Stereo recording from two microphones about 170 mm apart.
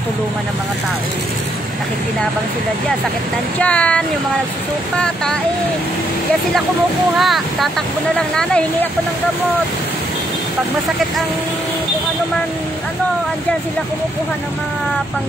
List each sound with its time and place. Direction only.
3.5 s speech: 5° left (ahead or behind)
7.2 s speech: centre (ahead or behind)